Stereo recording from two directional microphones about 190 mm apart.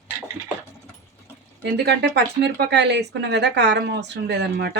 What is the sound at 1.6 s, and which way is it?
Speech, 60° right (ahead or behind).